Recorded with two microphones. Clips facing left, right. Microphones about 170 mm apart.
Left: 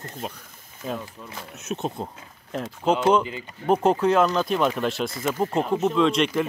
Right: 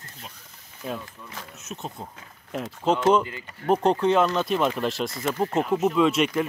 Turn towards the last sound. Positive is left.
turn(degrees=-5)  # may be behind; listen again after turning